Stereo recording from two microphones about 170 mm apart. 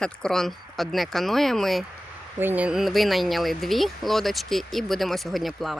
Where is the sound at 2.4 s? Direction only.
10° right (ahead or behind).